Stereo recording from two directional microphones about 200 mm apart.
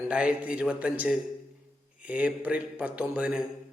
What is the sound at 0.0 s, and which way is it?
A man's voice, 5° right (ahead or behind).